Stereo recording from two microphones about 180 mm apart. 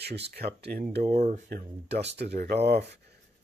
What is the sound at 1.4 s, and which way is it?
Speech, 60° right (ahead or behind).